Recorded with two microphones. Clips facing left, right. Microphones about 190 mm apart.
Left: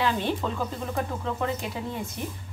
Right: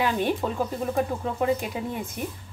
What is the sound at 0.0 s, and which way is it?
Speech, 15° right (ahead or behind).